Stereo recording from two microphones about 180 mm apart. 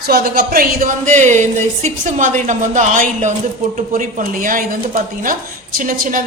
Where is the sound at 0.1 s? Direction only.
55° right (ahead or behind).